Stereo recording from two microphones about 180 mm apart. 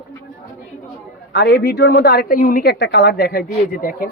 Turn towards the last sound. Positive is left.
turn(degrees=55)  # may be behind; listen again after turning